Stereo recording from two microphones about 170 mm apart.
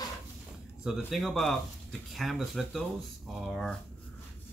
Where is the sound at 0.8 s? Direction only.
Centre (ahead or behind).